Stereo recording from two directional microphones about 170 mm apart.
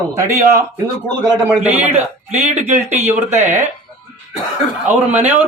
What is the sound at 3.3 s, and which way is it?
Speech, 15° right (ahead or behind).